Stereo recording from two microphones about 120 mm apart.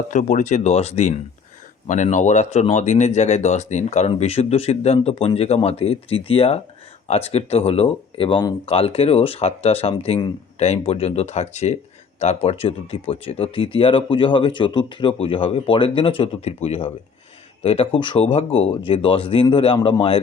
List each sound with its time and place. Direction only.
0.1 s speech: 90° left; by 1.2 s 60° left (ahead or behind)
1.9 s speech: 90° left; by 20.1 s 45° left (ahead or behind)